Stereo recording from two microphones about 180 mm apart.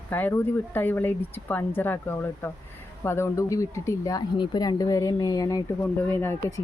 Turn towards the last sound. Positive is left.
turn(degrees=15)  # may be behind; listen again after turning